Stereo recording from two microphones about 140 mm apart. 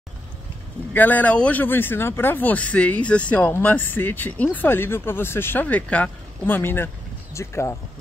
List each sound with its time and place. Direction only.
0.9 s speech: 10° left (ahead or behind)